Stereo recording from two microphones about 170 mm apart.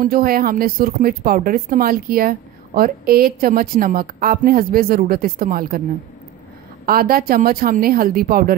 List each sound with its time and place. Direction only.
0.0 s speech: 60° right (ahead or behind)
6.9 s speech: 60° right (ahead or behind)